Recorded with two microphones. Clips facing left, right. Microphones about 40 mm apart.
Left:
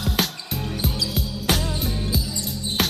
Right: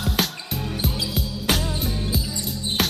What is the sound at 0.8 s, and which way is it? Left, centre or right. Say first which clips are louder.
Music: left 1 dB; centre.